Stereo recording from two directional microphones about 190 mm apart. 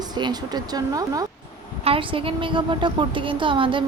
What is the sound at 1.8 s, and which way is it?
A woman's voice, 30° right (ahead or behind).